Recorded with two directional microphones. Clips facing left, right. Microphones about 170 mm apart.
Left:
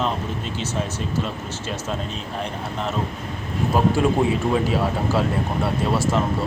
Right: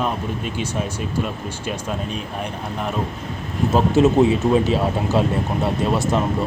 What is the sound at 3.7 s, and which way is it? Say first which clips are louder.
Speech: right 3 dB; 20° right (ahead or behind).